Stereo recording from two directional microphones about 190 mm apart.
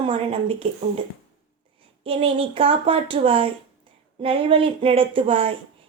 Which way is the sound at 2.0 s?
30° right (ahead or behind).